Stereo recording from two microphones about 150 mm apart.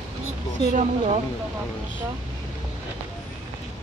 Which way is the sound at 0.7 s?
50° right (ahead or behind).